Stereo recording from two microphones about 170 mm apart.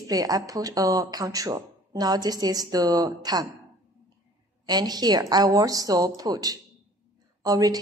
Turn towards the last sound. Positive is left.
turn(degrees=-20)  # may be behind; listen again after turning